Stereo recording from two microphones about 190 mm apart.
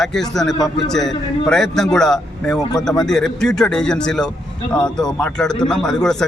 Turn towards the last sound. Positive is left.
turn(degrees=5)  # may be behind; listen again after turning